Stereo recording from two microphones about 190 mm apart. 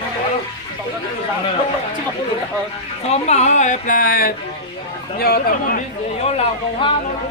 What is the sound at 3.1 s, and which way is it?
Speech, 35° left (ahead or behind).